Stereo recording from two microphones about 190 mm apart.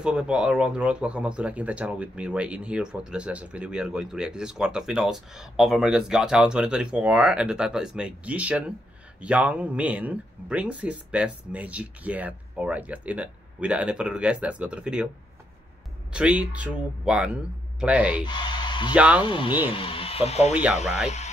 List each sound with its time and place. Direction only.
0.0 s speech: 5° right (ahead or behind)
16.1 s speech: 5° right (ahead or behind)
18.2 s speech: 25° left (ahead or behind)
18.9 s speech: 5° right (ahead or behind)
19.2 s speech: 25° left (ahead or behind)